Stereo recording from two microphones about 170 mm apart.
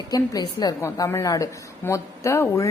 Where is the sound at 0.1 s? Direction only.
20° left (ahead or behind).